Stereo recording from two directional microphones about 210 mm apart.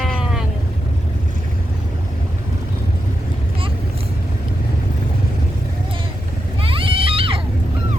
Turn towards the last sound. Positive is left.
turn(degrees=-25)  # may be behind; listen again after turning